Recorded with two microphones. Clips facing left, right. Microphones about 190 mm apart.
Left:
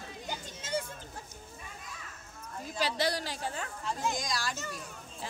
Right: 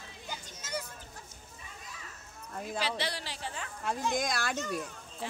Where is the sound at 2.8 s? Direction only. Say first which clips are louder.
Left 5 dB; 40° left (ahead or behind).